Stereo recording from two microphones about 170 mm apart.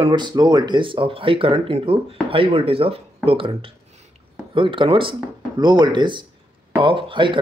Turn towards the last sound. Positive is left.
turn(degrees=-30)  # may be behind; listen again after turning